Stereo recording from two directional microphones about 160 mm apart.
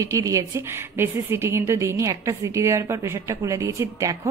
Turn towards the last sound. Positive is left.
turn(degrees=-20)  # may be behind; listen again after turning